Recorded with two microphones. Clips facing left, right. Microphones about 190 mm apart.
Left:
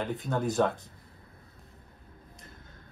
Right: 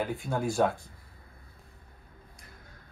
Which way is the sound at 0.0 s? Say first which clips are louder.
Even; 10° right (ahead or behind).